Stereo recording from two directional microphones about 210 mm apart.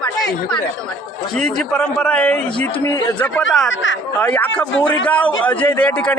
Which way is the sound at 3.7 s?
60° left (ahead or behind).